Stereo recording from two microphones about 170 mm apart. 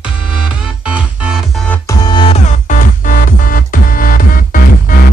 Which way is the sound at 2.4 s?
50° left (ahead or behind).